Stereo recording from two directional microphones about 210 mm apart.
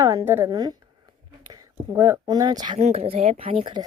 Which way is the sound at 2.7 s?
30° right (ahead or behind).